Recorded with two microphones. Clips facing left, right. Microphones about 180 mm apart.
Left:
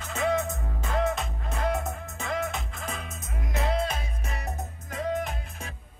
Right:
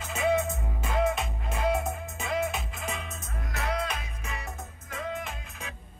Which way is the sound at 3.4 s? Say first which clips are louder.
Left 4 dB; 25° left (ahead or behind).